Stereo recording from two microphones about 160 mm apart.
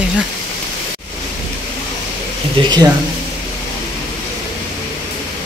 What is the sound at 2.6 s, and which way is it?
Speech, 25° right (ahead or behind).